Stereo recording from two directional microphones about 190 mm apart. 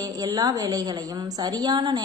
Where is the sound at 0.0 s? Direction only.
20° right (ahead or behind).